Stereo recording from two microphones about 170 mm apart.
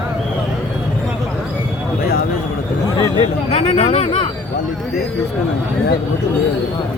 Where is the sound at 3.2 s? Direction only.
35° left (ahead or behind).